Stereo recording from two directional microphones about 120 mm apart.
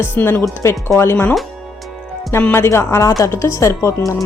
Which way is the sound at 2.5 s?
20° left (ahead or behind).